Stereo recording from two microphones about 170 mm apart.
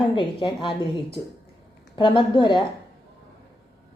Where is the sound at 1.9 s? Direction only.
30° left (ahead or behind).